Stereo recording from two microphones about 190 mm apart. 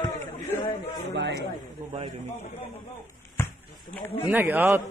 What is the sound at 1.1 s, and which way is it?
Speech, 65° right (ahead or behind).